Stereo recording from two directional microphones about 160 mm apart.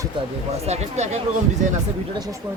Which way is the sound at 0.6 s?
40° right (ahead or behind).